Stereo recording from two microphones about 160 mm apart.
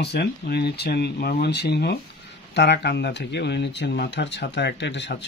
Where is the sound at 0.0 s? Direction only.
90° left.